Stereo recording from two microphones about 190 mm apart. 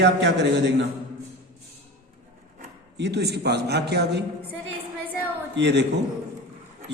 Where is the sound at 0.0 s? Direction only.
70° right (ahead or behind).